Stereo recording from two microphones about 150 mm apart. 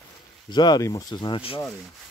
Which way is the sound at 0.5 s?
30° left (ahead or behind).